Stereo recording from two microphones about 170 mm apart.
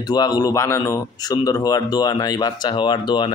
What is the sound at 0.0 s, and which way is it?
Speech, 25° left (ahead or behind).